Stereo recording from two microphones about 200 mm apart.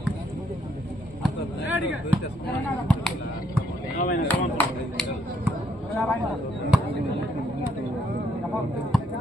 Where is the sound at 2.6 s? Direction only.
5° left (ahead or behind).